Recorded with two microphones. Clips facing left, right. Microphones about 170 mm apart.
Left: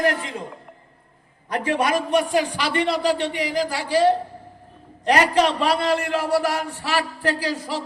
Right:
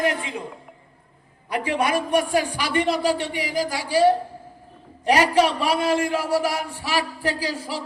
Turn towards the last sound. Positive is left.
turn(degrees=-10)  # may be behind; listen again after turning